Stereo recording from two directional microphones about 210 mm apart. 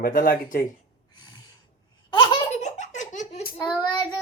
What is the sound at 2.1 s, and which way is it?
Laughter, 25° left (ahead or behind).